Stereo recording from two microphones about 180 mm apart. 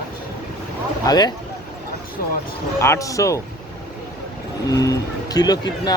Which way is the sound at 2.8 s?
15° left (ahead or behind).